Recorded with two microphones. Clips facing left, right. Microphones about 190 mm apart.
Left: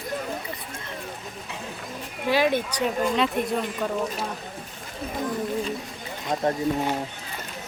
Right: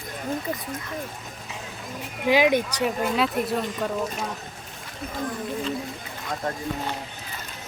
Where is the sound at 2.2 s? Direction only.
15° right (ahead or behind).